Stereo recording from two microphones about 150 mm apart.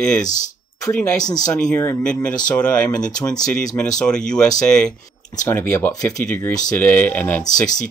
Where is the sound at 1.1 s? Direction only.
25° left (ahead or behind).